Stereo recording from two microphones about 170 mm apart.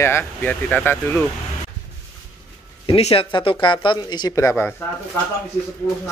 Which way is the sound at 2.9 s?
35° left (ahead or behind).